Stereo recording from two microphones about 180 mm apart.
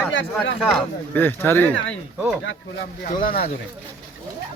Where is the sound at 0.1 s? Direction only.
90° left.